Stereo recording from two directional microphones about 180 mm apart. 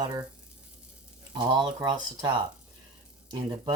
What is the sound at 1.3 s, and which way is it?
Speech, 25° right (ahead or behind).